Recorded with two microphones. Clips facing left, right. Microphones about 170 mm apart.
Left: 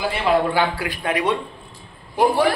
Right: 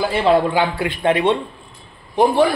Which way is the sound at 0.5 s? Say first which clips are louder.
Right 2 dB; 20° right (ahead or behind).